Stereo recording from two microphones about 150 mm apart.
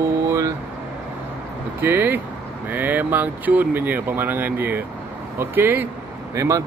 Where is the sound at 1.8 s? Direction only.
15° right (ahead or behind).